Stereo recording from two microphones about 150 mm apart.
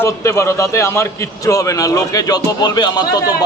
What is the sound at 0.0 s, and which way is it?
A man's voice, 20° left (ahead or behind).